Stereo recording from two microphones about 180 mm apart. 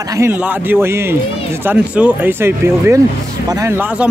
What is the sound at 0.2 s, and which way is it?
Speech, 10° right (ahead or behind).